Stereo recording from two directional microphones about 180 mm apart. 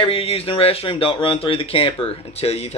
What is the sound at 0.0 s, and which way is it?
Speech, 30° left (ahead or behind).